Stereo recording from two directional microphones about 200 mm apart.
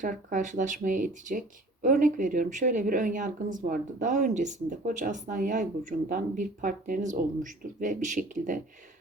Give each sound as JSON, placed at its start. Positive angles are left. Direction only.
{"t": 0.0, "sound": "speech", "side_deg": -40}